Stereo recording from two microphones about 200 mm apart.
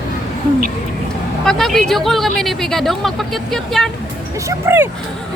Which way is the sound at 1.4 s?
Centre (ahead or behind).